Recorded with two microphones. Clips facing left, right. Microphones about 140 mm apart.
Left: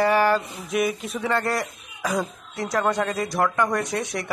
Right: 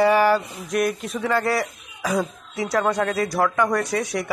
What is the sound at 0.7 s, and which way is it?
A man's voice, centre (ahead or behind).